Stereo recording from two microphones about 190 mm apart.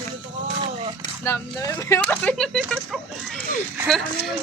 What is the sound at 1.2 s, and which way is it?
Speech, 15° left (ahead or behind).